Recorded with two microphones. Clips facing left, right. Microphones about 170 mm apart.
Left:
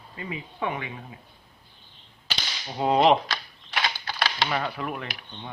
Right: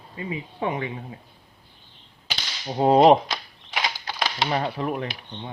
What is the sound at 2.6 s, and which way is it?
Whip, 35° right (ahead or behind).